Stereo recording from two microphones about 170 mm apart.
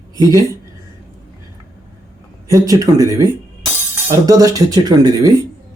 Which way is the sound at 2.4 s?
20° right (ahead or behind).